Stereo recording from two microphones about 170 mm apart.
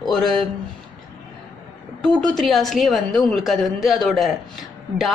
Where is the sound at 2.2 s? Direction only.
Centre (ahead or behind).